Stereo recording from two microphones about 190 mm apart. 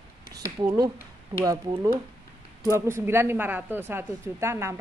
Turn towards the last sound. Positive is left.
turn(degrees=-15)  # may be behind; listen again after turning